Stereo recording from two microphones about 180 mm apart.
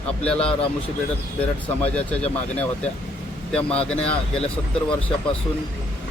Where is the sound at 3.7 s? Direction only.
35° left (ahead or behind).